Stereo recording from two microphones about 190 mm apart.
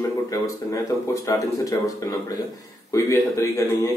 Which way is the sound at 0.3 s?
15° left (ahead or behind).